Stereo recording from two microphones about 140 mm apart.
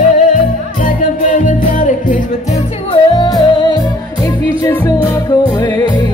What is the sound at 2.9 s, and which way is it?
Music, 35° left (ahead or behind).